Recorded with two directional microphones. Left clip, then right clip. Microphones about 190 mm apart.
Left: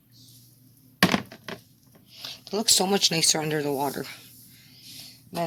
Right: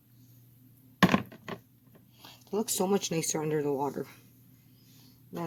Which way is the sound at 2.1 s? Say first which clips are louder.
Left 3 dB; centre (ahead or behind).